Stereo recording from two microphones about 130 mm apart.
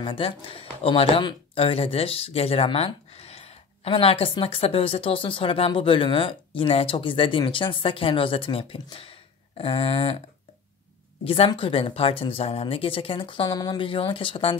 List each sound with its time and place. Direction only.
0.0 s speech: 40° left (ahead or behind)
11.2 s speech: 45° left (ahead or behind)